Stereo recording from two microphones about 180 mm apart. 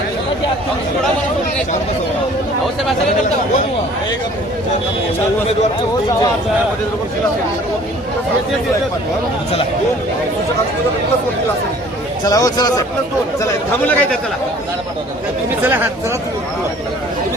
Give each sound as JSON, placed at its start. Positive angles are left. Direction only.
{"t": 12.2, "sound": "speech", "side_deg": 20}
{"t": 13.4, "sound": "a man's voice", "side_deg": 10}
{"t": 15.6, "sound": "speech", "side_deg": -10}